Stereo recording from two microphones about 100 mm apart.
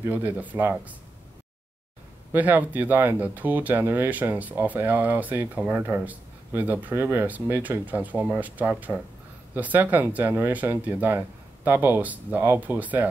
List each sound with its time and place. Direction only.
0.0 s speech: 15° right (ahead or behind)
2.3 s speech: 15° right (ahead or behind)